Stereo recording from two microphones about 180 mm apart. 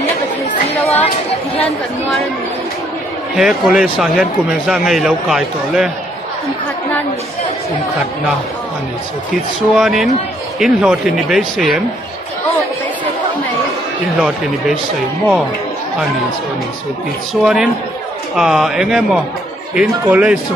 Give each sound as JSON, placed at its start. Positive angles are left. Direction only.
{"t": 0.7, "sound": "chatter", "side_deg": 35}
{"t": 3.3, "sound": "speech", "side_deg": 0}
{"t": 9.8, "sound": "speech", "side_deg": 0}
{"t": 17.3, "sound": "speech", "side_deg": -5}